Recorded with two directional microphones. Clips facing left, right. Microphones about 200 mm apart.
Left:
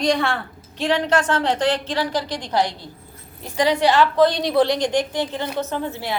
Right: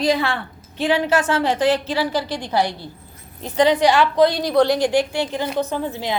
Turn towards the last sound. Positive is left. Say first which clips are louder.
# right 2 dB
turn(degrees=-15)  # may be behind; listen again after turning